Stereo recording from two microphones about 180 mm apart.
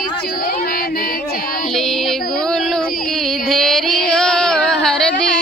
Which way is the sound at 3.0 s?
Centre (ahead or behind).